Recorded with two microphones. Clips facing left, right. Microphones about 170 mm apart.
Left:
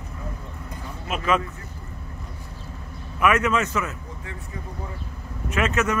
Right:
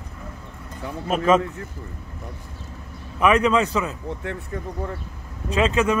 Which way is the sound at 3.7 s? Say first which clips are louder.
Right 3 dB; 15° right (ahead or behind).